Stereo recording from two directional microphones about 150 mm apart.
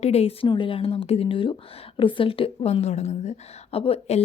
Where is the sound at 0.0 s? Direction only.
45° left (ahead or behind).